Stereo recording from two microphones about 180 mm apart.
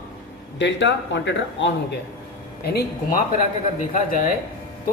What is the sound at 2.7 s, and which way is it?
Speech, 60° left (ahead or behind).